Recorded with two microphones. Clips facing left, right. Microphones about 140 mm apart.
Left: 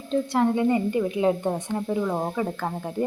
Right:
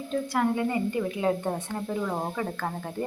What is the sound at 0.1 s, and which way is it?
A woman's voice, 25° left (ahead or behind).